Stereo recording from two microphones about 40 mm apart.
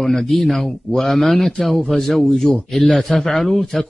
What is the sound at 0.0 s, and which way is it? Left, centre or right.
A man's voice, centre.